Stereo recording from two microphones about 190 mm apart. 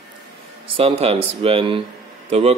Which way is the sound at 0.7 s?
30° right (ahead or behind).